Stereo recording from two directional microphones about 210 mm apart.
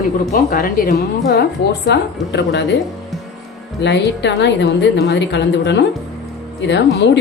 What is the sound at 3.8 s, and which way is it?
A woman's voice, 55° left (ahead or behind).